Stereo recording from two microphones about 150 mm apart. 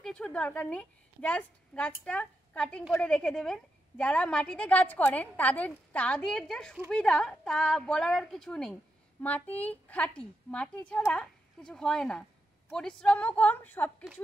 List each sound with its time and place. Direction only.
0.0 s a woman's voice: 5° left (ahead or behind)